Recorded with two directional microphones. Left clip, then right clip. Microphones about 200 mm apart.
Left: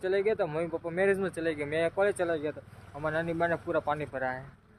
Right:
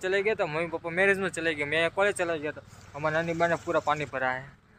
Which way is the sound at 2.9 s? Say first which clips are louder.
Right 3 dB; 20° right (ahead or behind).